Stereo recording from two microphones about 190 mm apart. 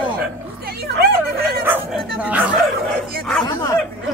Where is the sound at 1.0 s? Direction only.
55° right (ahead or behind).